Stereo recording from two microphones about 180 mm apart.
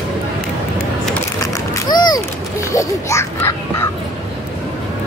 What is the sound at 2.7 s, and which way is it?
Music, 15° left (ahead or behind).